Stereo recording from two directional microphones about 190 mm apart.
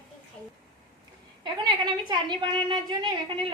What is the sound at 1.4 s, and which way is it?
A woman's voice, 25° right (ahead or behind).